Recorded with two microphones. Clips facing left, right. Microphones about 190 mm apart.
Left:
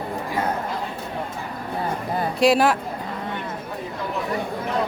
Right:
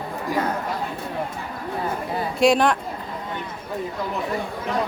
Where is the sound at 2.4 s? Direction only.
5° left (ahead or behind).